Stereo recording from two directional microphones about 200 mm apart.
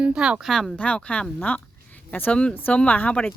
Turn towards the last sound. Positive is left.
turn(degrees=5)  # may be behind; listen again after turning